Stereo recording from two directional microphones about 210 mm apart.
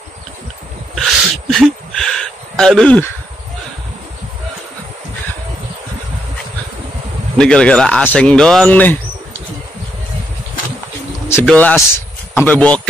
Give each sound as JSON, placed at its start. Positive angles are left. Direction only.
{"t": 0.9, "sound": "a sound", "side_deg": 0}
{"t": 7.3, "sound": "speech", "side_deg": 5}
{"t": 11.2, "sound": "speech", "side_deg": 10}